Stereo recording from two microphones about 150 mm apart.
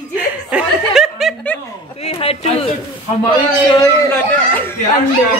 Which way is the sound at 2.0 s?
45° left (ahead or behind).